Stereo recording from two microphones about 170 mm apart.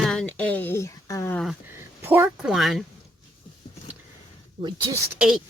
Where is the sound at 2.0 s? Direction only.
10° right (ahead or behind).